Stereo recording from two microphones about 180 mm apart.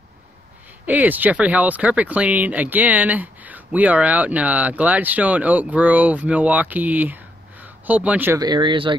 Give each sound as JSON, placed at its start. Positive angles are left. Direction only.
{"t": 0.8, "sound": "speech", "side_deg": -10}
{"t": 8.4, "sound": "speech", "side_deg": -25}